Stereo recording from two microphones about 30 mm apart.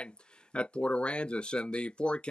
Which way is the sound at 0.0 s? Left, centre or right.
Left.